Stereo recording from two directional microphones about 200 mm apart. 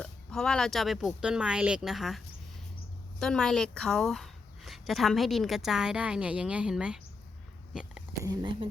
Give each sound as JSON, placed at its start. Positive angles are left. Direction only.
{"t": 0.0, "sound": "a woman's voice", "side_deg": 5}
{"t": 7.7, "sound": "a sound", "side_deg": -5}
{"t": 8.2, "sound": "speech", "side_deg": -20}